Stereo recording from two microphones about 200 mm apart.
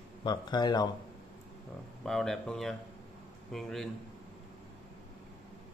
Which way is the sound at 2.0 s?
Centre (ahead or behind).